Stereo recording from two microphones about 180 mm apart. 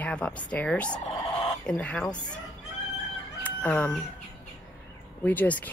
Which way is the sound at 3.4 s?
10° left (ahead or behind).